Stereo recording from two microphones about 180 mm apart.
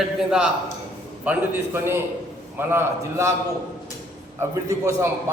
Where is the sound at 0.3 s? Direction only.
5° right (ahead or behind).